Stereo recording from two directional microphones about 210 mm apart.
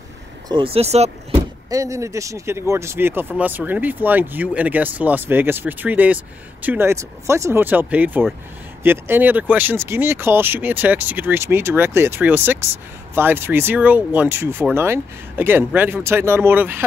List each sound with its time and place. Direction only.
0.5 s speech: 25° right (ahead or behind)
1.7 s speech: 15° right (ahead or behind)